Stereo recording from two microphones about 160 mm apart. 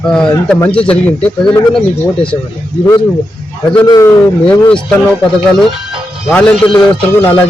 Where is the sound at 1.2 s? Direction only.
30° left (ahead or behind).